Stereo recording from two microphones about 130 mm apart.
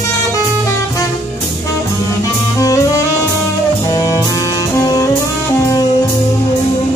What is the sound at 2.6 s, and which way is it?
Music, 25° left (ahead or behind).